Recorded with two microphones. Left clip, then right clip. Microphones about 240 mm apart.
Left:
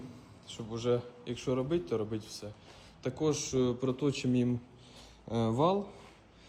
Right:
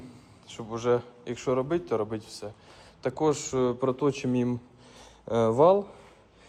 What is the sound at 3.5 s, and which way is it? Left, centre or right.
Speech, right.